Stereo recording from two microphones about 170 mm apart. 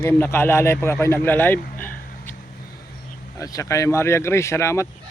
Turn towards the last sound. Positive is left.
turn(degrees=15)  # may be behind; listen again after turning